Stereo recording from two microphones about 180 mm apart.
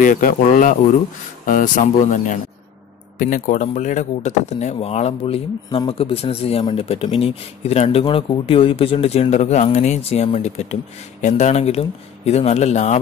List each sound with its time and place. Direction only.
0.0 s speech: 50° left (ahead or behind)